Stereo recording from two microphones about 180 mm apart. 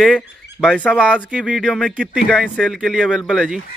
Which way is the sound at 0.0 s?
Centre (ahead or behind).